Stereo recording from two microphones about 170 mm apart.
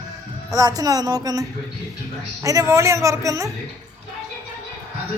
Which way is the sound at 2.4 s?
20° right (ahead or behind).